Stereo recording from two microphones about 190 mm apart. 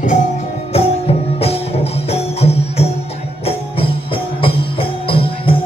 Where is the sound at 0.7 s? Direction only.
30° left (ahead or behind).